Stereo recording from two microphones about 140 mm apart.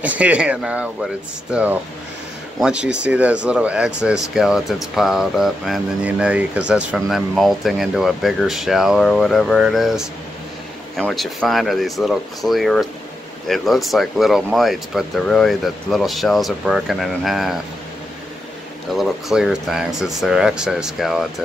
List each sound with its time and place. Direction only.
0.0 s speech: 10° right (ahead or behind)
18.9 s speech: centre (ahead or behind)